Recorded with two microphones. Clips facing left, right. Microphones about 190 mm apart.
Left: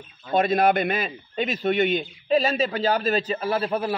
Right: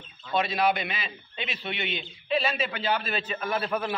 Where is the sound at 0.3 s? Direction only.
50° left (ahead or behind).